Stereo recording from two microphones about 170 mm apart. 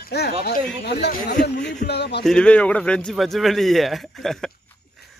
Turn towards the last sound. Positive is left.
turn(degrees=0)  # may be behind; listen again after turning